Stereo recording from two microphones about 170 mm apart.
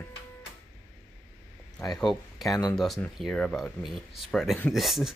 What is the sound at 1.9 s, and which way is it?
Speech, centre (ahead or behind).